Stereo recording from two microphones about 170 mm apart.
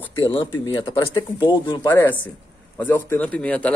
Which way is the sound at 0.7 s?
20° left (ahead or behind).